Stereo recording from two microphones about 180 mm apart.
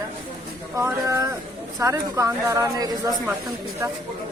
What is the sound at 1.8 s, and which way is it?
Speech, 15° right (ahead or behind).